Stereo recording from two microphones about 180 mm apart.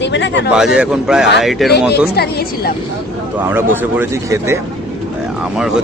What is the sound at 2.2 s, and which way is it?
Speech, 60° left (ahead or behind).